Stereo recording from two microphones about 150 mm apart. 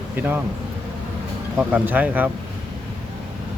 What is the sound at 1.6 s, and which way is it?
Speech, 10° right (ahead or behind).